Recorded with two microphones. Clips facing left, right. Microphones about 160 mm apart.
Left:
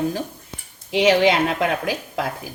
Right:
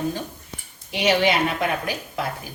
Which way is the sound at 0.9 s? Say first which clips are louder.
Left 4 dB; 90° left.